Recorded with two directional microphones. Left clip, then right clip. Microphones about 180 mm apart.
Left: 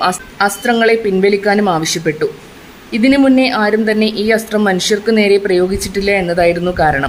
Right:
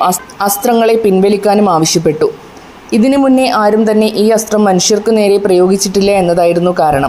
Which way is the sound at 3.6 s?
20° right (ahead or behind).